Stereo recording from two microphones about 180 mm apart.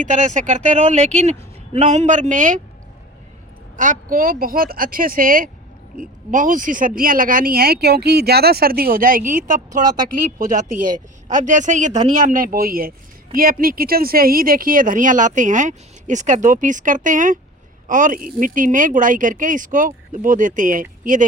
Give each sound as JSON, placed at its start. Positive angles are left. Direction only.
{"t": 0.0, "sound": "speech", "side_deg": -40}
{"t": 3.8, "sound": "speech", "side_deg": -50}